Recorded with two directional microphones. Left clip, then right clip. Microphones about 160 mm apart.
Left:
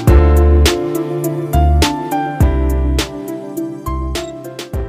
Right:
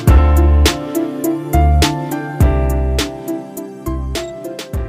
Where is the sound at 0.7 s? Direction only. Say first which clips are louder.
Left 1 dB; centre (ahead or behind).